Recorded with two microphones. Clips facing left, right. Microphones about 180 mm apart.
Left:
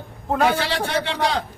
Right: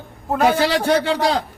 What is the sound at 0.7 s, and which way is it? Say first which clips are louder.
Speech: right 6 dB; 40° right (ahead or behind).